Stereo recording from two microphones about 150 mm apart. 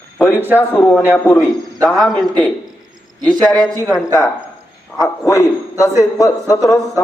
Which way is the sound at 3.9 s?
20° left (ahead or behind).